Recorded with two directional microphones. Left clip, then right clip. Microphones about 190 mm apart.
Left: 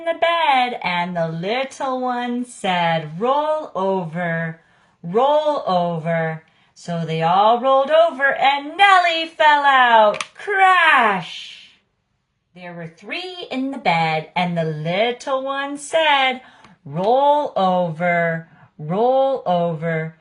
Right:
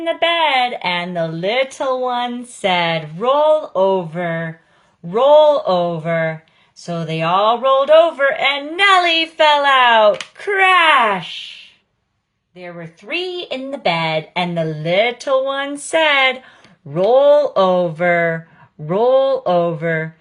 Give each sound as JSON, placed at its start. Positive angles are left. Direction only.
{"t": 0.0, "sound": "a woman's voice", "side_deg": -25}